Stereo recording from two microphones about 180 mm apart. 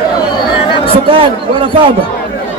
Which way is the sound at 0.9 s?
30° right (ahead or behind).